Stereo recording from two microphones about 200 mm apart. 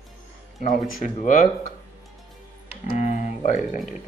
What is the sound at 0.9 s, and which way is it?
Speech, 40° left (ahead or behind).